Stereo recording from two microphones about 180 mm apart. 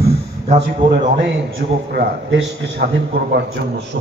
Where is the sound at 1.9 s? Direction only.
75° right (ahead or behind).